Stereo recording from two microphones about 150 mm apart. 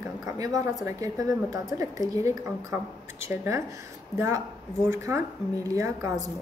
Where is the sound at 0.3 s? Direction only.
25° right (ahead or behind).